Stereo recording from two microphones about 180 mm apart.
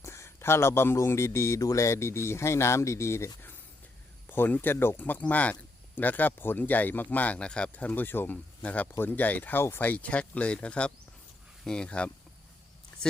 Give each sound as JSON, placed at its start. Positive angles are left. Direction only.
{"t": 0.0, "sound": "speech", "side_deg": 15}